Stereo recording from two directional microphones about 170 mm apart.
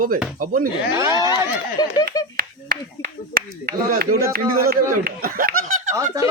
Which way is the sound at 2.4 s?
65° right (ahead or behind).